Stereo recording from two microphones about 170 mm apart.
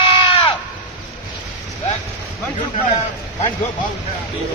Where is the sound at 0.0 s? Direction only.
30° left (ahead or behind).